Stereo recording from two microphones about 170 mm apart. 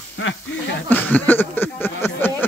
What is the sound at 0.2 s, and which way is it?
Speech, 90° left.